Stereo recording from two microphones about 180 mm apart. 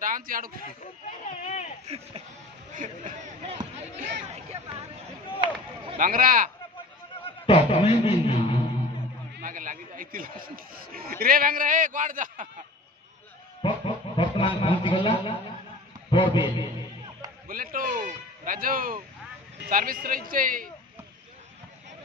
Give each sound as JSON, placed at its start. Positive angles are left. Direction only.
{"t": 0.0, "sound": "a man's voice", "side_deg": -50}
{"t": 1.2, "sound": "a sound", "side_deg": 40}
{"t": 2.7, "sound": "speech", "side_deg": -45}
{"t": 4.3, "sound": "hubbub", "side_deg": -35}
{"t": 5.9, "sound": "speech", "side_deg": -50}
{"t": 7.4, "sound": "a man's voice", "side_deg": 30}
{"t": 9.4, "sound": "speech", "side_deg": -50}
{"t": 13.6, "sound": "a sound", "side_deg": 30}
{"t": 16.1, "sound": "a man's voice", "side_deg": 25}
{"t": 17.5, "sound": "a sound", "side_deg": -50}
{"t": 19.6, "sound": "speech", "side_deg": -50}